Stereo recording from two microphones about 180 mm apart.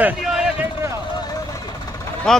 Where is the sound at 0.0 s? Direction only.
5° right (ahead or behind).